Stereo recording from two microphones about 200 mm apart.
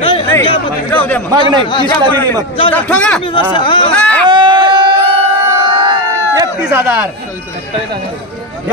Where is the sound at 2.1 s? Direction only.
10° left (ahead or behind).